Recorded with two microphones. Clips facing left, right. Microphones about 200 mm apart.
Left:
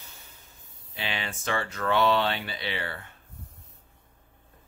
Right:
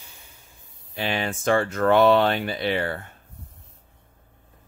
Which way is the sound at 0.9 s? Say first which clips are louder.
Right 8 dB; 45° right (ahead or behind).